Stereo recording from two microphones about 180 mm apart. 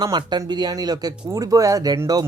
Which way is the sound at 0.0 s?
25° right (ahead or behind).